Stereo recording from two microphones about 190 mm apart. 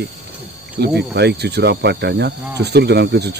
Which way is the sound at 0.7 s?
60° right (ahead or behind).